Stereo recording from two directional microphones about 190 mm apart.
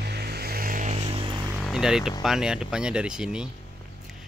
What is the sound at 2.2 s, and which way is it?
Speech, 5° right (ahead or behind).